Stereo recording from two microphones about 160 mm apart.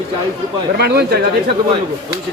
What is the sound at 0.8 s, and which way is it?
Speech, 90° right.